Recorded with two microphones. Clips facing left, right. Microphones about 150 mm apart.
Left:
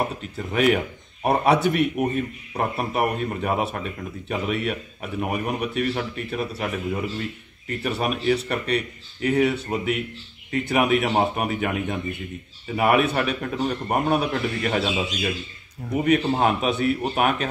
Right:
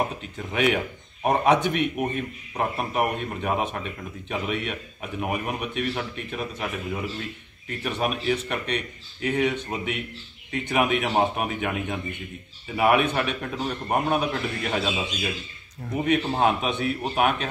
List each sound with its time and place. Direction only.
0.5 s a man's voice: centre (ahead or behind)